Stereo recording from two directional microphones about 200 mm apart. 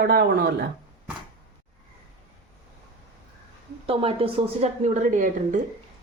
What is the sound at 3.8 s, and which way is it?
A woman's voice, 30° right (ahead or behind).